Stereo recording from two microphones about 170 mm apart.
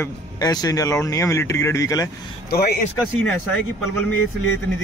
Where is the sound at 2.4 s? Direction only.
65° left (ahead or behind).